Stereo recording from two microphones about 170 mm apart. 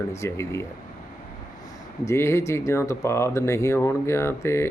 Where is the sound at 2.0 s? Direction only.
15° left (ahead or behind).